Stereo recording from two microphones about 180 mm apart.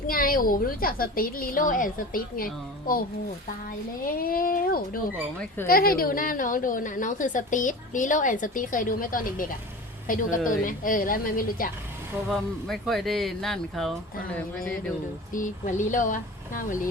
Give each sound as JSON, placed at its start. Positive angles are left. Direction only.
{"t": 0.1, "sound": "a woman's voice", "side_deg": 50}
{"t": 12.3, "sound": "speech", "side_deg": 0}
{"t": 15.3, "sound": "a woman's voice", "side_deg": 45}